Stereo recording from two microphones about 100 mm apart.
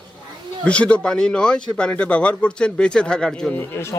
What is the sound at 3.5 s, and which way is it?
Speech, 25° left (ahead or behind).